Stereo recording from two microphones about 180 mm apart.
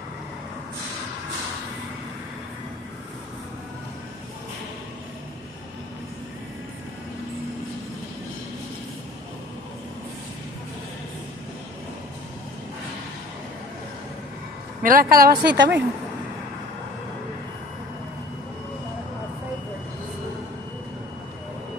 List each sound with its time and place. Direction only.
14.8 s speech: 50° right (ahead or behind); by 15.8 s 75° right (ahead or behind)